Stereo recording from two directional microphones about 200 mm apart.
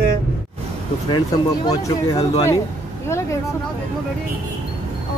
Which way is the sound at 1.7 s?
20° left (ahead or behind).